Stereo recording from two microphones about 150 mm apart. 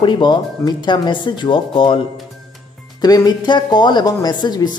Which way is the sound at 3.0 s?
25° left (ahead or behind).